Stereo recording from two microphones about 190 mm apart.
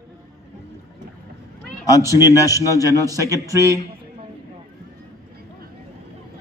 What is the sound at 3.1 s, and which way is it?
Speech, 15° right (ahead or behind).